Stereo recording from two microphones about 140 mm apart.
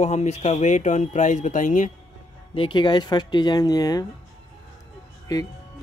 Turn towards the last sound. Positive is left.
turn(degrees=25)  # may be behind; listen again after turning